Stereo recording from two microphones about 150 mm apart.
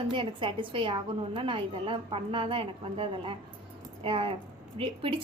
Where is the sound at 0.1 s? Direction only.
35° right (ahead or behind).